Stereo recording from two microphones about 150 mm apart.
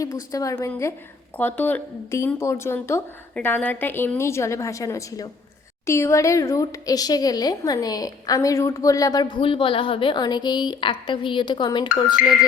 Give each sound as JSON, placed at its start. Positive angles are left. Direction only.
{"t": 0.3, "sound": "speech", "side_deg": 20}